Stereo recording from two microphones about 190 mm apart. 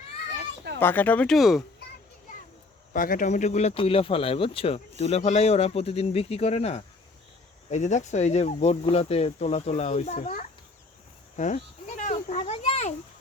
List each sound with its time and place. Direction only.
0.3 s children playing: 60° right (ahead or behind)
0.8 s speech: 10° left (ahead or behind)
2.9 s speech: 45° left (ahead or behind)
11.3 s a sound: 40° left (ahead or behind)